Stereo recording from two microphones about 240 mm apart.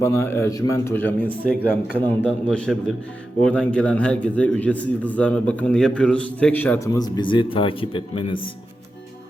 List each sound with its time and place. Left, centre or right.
0.0 s a man's voice: centre